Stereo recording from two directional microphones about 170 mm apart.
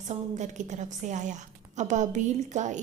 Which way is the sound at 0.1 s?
45° right (ahead or behind).